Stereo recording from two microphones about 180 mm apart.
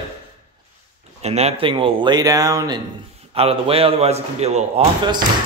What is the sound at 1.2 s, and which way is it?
Speech, 35° right (ahead or behind).